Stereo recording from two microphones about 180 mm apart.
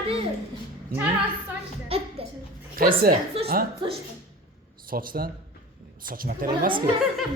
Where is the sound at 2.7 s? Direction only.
50° right (ahead or behind).